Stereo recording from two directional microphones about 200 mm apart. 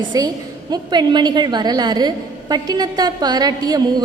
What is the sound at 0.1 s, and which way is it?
A woman's voice, 20° right (ahead or behind).